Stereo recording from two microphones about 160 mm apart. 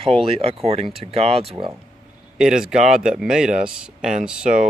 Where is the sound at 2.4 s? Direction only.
5° right (ahead or behind).